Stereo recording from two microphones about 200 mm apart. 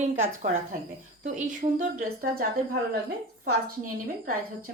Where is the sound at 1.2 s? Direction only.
40° right (ahead or behind).